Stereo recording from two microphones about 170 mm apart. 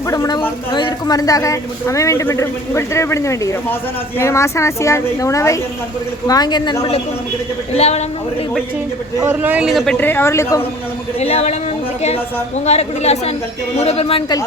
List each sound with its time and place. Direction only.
0.1 s a sound: 20° left (ahead or behind)
0.7 s a woman's voice: 25° left (ahead or behind)
9.2 s a man's voice: 10° right (ahead or behind); by 10.6 s 15° left (ahead or behind)
11.2 s a woman's voice: 35° left (ahead or behind)